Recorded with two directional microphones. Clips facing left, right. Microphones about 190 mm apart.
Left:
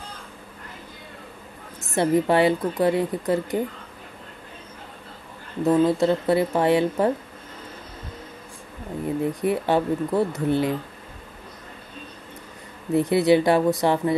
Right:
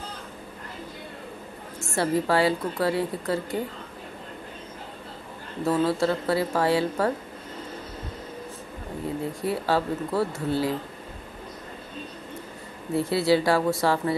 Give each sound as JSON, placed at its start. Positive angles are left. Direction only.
{"t": 1.8, "sound": "a woman's voice", "side_deg": 20}
{"t": 5.6, "sound": "a woman's voice", "side_deg": 20}
{"t": 9.2, "sound": "a woman's voice", "side_deg": 20}
{"t": 12.9, "sound": "a woman's voice", "side_deg": 20}